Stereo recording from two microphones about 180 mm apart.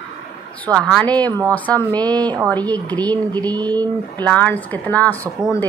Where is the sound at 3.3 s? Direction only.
20° right (ahead or behind).